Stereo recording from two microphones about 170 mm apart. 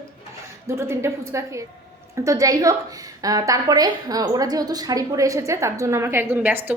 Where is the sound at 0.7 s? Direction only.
15° right (ahead or behind).